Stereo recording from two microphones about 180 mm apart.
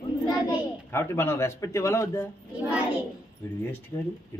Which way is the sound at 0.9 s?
15° left (ahead or behind).